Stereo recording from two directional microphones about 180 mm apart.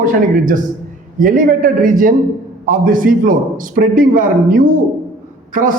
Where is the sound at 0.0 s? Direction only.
50° right (ahead or behind).